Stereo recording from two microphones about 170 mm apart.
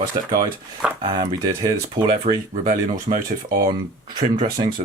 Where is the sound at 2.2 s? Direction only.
50° right (ahead or behind).